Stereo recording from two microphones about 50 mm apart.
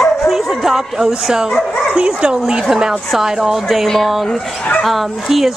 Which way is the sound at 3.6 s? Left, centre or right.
Centre.